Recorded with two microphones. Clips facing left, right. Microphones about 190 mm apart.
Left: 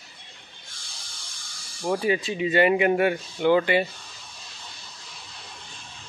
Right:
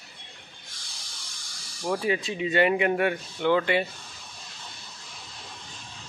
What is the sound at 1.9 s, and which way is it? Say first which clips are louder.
Speech: left 3 dB; centre (ahead or behind).